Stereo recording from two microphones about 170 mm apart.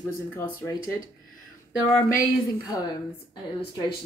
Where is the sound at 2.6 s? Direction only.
20° left (ahead or behind).